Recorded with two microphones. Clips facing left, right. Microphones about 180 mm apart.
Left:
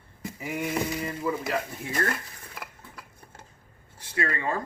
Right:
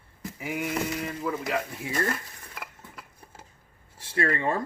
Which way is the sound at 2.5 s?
5° right (ahead or behind).